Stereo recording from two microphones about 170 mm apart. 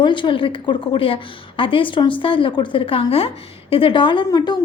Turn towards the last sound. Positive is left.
turn(degrees=25)  # may be behind; listen again after turning